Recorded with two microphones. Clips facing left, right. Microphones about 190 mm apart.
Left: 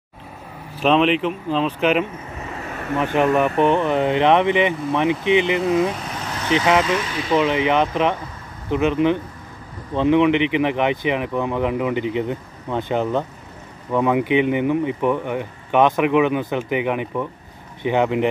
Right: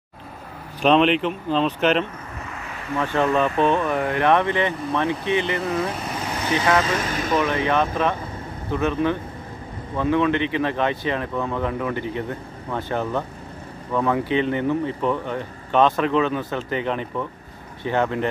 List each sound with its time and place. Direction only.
0.7 s speech: centre (ahead or behind)
3.0 s speech: 15° left (ahead or behind)
7.0 s speech: 45° right (ahead or behind)
7.3 s speech: 15° left (ahead or behind)